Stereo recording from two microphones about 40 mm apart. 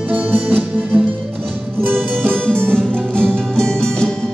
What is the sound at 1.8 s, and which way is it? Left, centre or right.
Music, right.